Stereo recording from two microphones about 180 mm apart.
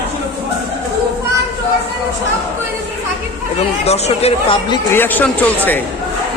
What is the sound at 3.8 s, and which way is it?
Speech, 35° left (ahead or behind).